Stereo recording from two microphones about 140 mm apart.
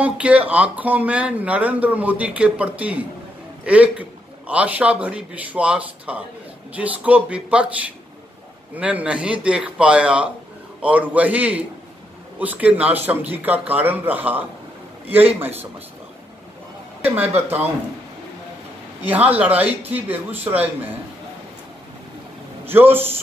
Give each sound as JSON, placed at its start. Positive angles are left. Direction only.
{"t": 0.0, "sound": "speech", "side_deg": -10}
{"t": 17.0, "sound": "speech", "side_deg": -15}
{"t": 19.0, "sound": "speech", "side_deg": -10}
{"t": 22.7, "sound": "speech", "side_deg": -15}